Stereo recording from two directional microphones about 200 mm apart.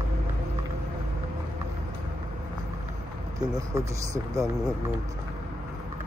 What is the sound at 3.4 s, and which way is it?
Speech, 15° right (ahead or behind).